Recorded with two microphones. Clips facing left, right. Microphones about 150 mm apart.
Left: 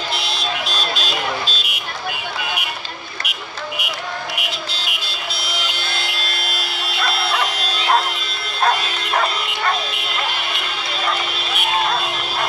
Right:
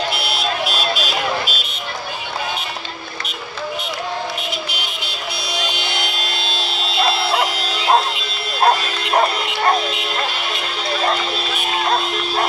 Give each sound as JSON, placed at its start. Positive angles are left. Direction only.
{"t": 0.2, "sound": "vehicle", "side_deg": -10}
{"t": 3.3, "sound": "vehicle", "side_deg": 10}
{"t": 4.6, "sound": "vehicle", "side_deg": -15}
{"t": 8.5, "sound": "bow-wow", "side_deg": -30}